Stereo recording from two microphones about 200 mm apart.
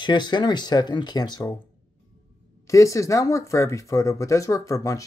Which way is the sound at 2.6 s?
15° left (ahead or behind).